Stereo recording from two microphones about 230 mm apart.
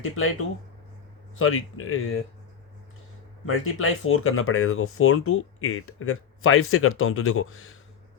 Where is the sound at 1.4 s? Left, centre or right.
Left.